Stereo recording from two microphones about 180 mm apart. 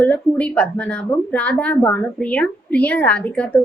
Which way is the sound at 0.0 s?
5° left (ahead or behind).